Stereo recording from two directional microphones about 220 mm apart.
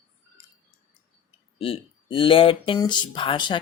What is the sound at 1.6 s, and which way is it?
Speech, 25° left (ahead or behind).